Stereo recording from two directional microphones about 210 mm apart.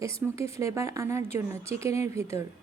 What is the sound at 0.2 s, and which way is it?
A woman's voice, 5° right (ahead or behind).